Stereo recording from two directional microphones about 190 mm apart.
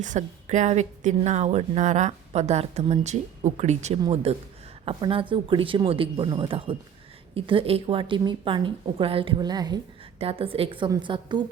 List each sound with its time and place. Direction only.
0.0 s a woman's voice: 40° right (ahead or behind); by 11.4 s 25° right (ahead or behind)